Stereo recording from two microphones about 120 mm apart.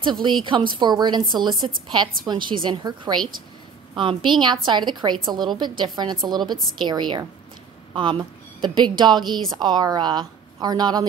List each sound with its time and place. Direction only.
0.0 s a woman's voice: 40° right (ahead or behind)
6.2 s a woman's voice: 35° right (ahead or behind)